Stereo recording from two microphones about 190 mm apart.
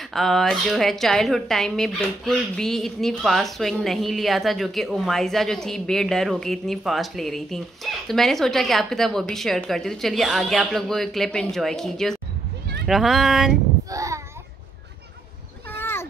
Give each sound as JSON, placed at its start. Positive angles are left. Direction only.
{"t": 0.1, "sound": "speech", "side_deg": 0}
{"t": 13.8, "sound": "a sound", "side_deg": -15}
{"t": 15.8, "sound": "baby cry", "side_deg": 10}